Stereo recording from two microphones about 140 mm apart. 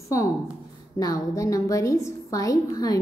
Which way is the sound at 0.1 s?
25° left (ahead or behind).